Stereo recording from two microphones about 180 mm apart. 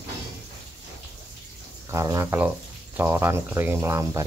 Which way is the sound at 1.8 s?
20° right (ahead or behind).